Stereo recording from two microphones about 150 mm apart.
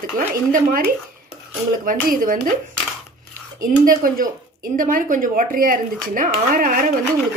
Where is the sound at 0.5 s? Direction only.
65° right (ahead or behind).